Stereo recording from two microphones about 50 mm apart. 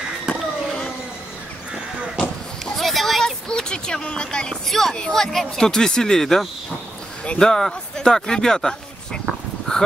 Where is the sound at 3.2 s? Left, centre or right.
Centre.